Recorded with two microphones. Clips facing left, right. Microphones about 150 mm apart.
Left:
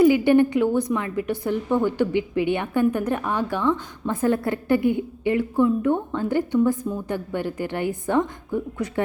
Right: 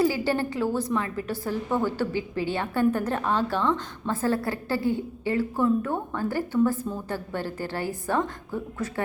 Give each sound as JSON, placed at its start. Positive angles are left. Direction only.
{"t": 0.0, "sound": "a woman's voice", "side_deg": 20}